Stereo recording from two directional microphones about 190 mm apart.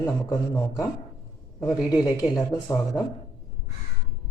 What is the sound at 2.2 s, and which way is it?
Speech, 20° left (ahead or behind).